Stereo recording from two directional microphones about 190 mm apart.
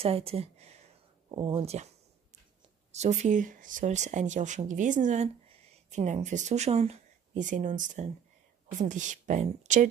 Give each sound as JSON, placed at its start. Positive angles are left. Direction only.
{"t": 0.0, "sound": "speech", "side_deg": -30}
{"t": 2.9, "sound": "speech", "side_deg": -35}